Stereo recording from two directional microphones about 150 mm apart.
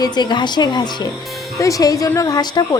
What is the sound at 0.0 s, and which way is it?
A woman's voice, 30° left (ahead or behind).